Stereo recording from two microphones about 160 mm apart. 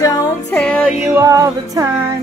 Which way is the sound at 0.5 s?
10° left (ahead or behind).